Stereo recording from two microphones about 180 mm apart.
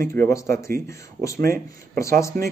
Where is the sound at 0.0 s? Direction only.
15° left (ahead or behind).